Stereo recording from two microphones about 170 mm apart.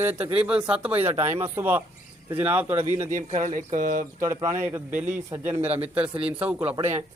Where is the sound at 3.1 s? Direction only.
50° right (ahead or behind).